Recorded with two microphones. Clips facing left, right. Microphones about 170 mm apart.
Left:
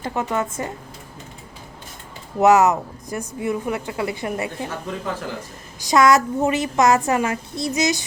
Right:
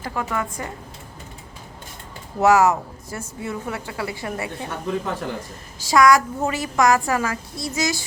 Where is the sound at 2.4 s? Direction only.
20° left (ahead or behind).